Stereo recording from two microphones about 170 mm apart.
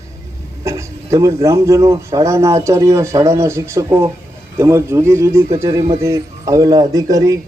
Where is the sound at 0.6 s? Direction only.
20° right (ahead or behind).